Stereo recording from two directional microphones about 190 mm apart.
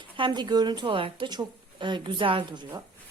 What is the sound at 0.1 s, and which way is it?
A woman's voice, 25° right (ahead or behind).